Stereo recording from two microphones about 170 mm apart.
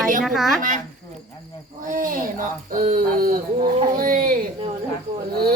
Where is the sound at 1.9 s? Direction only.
55° right (ahead or behind).